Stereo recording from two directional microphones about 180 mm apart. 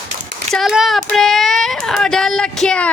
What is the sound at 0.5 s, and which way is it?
Speech, centre (ahead or behind).